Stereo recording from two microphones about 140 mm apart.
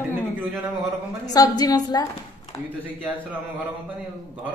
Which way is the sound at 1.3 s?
25° left (ahead or behind).